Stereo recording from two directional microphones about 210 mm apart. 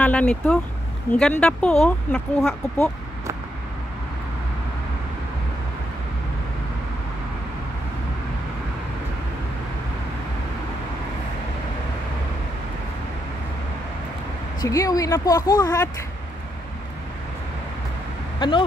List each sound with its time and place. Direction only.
0.0 s speech: 5° left (ahead or behind)
14.6 s speech: 15° left (ahead or behind)